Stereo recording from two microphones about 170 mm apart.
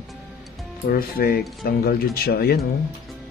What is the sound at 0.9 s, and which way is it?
Speech, 60° left (ahead or behind).